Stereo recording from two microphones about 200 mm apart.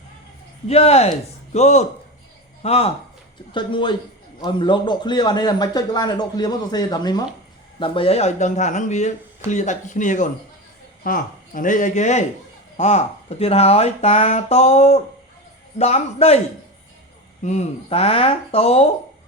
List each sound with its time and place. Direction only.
0.7 s a man's voice: 30° left (ahead or behind)
17.4 s a man's voice: 35° left (ahead or behind)